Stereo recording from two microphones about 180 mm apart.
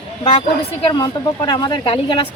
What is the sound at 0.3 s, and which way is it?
Speech, 30° left (ahead or behind).